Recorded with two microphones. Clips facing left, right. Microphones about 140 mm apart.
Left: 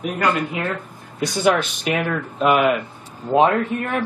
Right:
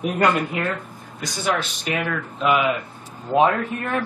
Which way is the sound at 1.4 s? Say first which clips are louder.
Left 5 dB; 55° left (ahead or behind).